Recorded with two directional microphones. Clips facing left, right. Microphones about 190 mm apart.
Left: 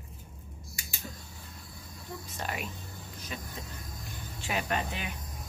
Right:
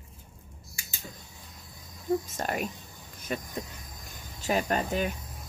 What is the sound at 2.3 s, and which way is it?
Speech, 45° right (ahead or behind).